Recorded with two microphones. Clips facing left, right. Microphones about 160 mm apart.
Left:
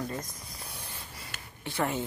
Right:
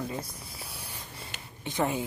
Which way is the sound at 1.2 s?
20° right (ahead or behind).